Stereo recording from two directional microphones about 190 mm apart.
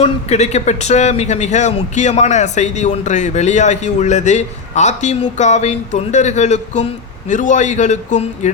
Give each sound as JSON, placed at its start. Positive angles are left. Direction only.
{"t": 0.0, "sound": "speech", "side_deg": 35}